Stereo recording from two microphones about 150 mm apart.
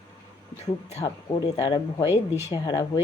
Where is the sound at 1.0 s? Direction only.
25° left (ahead or behind).